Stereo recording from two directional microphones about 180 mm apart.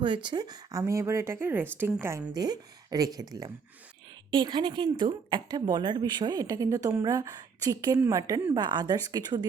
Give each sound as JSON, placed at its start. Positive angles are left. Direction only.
{"t": 0.0, "sound": "a woman's voice", "side_deg": -25}